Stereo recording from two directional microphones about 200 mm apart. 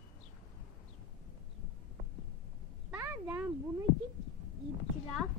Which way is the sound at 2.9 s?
10° right (ahead or behind).